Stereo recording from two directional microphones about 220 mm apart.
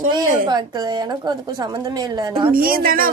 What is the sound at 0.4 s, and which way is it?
A woman's voice, 20° right (ahead or behind).